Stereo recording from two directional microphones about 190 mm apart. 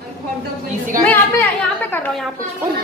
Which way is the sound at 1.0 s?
10° left (ahead or behind).